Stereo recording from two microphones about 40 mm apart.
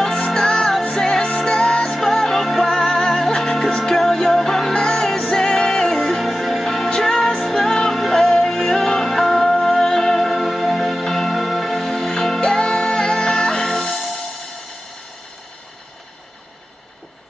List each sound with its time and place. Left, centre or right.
0.3 s music: centre
11.9 s music: centre